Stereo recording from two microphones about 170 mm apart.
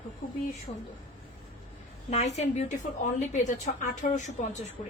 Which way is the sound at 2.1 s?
40° left (ahead or behind).